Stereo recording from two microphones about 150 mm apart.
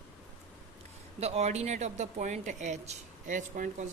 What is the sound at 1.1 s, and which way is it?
Speech, 45° right (ahead or behind).